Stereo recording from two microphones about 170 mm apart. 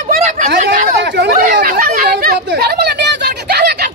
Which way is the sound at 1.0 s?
80° right.